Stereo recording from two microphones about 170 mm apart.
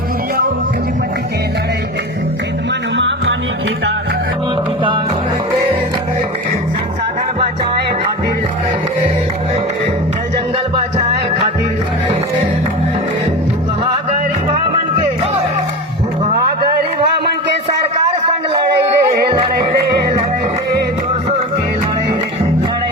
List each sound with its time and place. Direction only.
10.9 s music: 35° right (ahead or behind)
18.9 s music: 30° right (ahead or behind)